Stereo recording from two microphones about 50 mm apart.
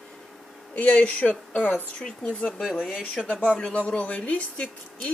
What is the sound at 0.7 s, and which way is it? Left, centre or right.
A woman's voice, left.